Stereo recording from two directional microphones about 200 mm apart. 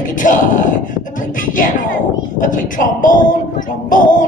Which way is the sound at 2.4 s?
40° left (ahead or behind).